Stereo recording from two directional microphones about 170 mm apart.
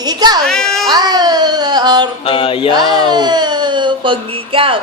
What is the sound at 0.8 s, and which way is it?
Speech, 25° right (ahead or behind).